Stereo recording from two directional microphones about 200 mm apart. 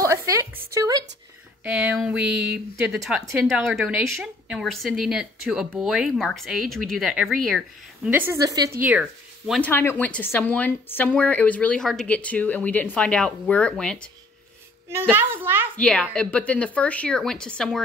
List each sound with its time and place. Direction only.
0.1 s a sound: 15° right (ahead or behind)
1.6 s a woman's voice: 5° right (ahead or behind)
8.1 s speech: 10° right (ahead or behind)
9.6 s speech: 10° left (ahead or behind)
14.9 s speech: 10° right (ahead or behind)
15.8 s a woman's voice: 5° left (ahead or behind)